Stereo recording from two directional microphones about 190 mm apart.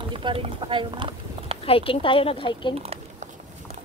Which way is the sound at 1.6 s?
30° left (ahead or behind).